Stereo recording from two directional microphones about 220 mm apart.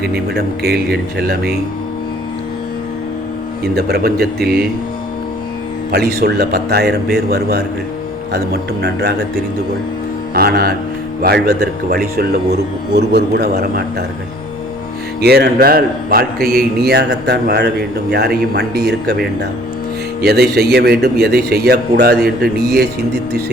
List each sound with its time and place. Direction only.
0.0 s a man's voice: 45° right (ahead or behind)
3.6 s a man's voice: 45° right (ahead or behind)
5.9 s a man's voice: 45° right (ahead or behind)
8.8 s a man's voice: 45° right (ahead or behind)
10.3 s a man's voice: 45° right (ahead or behind)
15.2 s a man's voice: 45° right (ahead or behind)
20.2 s a man's voice: 45° right (ahead or behind)